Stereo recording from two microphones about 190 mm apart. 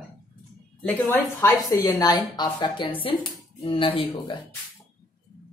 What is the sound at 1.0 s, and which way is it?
A woman's voice, 15° left (ahead or behind).